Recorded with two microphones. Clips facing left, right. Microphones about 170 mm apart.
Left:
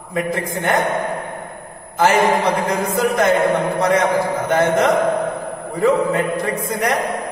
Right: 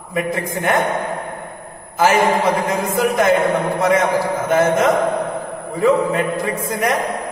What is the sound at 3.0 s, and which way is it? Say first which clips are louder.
Speech: right 1 dB; centre (ahead or behind).